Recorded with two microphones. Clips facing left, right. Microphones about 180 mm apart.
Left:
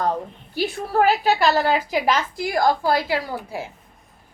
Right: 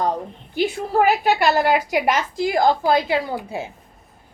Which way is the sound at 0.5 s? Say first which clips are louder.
Right 2 dB; 15° right (ahead or behind).